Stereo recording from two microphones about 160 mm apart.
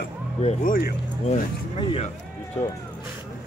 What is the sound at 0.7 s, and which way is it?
Speech, 65° left (ahead or behind).